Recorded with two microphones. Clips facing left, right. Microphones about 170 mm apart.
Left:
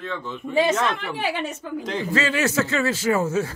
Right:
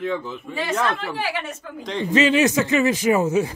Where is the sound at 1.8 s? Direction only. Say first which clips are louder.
Right 2 dB; centre (ahead or behind).